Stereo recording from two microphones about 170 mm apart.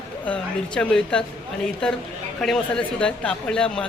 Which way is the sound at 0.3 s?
5° left (ahead or behind).